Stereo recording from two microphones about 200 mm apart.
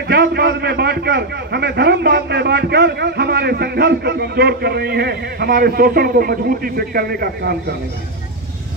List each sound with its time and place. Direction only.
0.1 s a man's voice: 55° right (ahead or behind)